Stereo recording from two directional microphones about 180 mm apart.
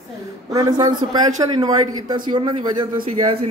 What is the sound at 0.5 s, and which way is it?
A man's voice, 20° right (ahead or behind).